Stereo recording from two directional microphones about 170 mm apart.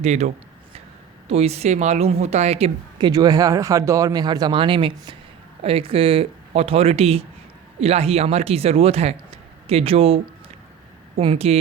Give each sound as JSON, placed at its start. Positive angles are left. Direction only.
{"t": 0.0, "sound": "a woman's voice", "side_deg": -40}
{"t": 3.1, "sound": "a woman's voice", "side_deg": -20}
{"t": 11.2, "sound": "a woman's voice", "side_deg": -35}